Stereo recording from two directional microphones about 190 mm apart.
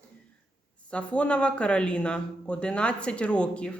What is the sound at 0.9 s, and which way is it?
A woman's voice, 5° left (ahead or behind).